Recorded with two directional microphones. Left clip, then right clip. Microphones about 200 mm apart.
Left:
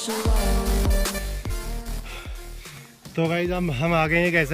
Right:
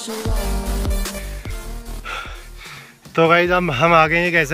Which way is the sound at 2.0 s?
5° left (ahead or behind).